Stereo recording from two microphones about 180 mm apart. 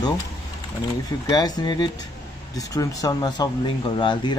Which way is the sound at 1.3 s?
20° left (ahead or behind).